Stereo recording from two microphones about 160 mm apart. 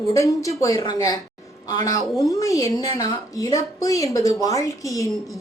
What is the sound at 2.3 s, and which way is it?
Speech, 20° left (ahead or behind).